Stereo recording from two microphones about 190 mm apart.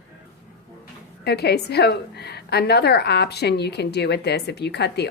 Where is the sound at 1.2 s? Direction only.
60° left (ahead or behind).